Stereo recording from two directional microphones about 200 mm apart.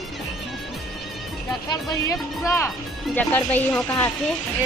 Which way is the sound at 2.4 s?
15° left (ahead or behind).